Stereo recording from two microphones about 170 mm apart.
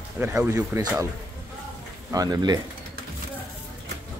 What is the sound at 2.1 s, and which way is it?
Speech, 25° right (ahead or behind).